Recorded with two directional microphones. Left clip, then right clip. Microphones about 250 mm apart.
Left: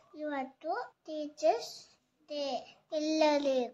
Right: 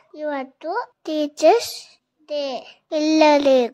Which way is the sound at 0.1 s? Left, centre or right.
Right.